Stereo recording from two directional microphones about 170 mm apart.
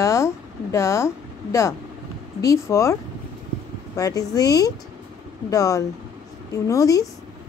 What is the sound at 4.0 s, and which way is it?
Speech, 20° left (ahead or behind).